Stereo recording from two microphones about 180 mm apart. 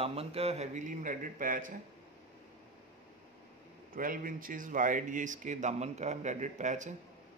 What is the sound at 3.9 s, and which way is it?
A man's voice, 50° right (ahead or behind).